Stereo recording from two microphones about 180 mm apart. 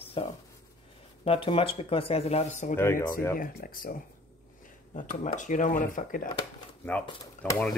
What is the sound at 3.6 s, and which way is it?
Speech, 55° left (ahead or behind).